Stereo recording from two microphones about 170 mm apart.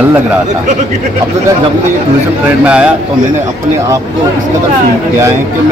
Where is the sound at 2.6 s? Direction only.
5° right (ahead or behind).